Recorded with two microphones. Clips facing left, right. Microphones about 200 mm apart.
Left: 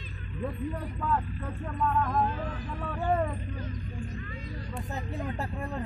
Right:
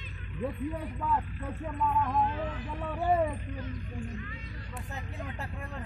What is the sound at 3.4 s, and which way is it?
Speech, 35° left (ahead or behind).